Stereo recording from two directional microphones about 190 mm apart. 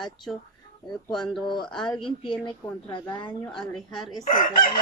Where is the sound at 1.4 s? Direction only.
25° left (ahead or behind).